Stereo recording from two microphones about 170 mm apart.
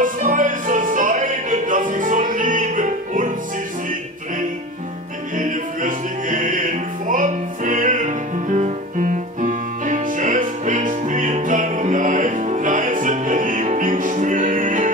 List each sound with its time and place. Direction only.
0.0 s music: 50° right (ahead or behind)
5.4 s music: 50° right (ahead or behind)